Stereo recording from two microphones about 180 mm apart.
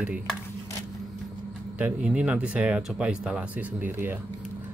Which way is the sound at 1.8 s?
10° right (ahead or behind).